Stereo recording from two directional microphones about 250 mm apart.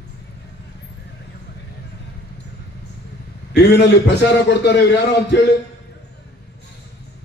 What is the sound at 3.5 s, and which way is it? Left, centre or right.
A man's voice, left.